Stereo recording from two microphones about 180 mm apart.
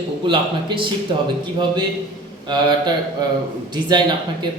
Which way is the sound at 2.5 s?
25° right (ahead or behind).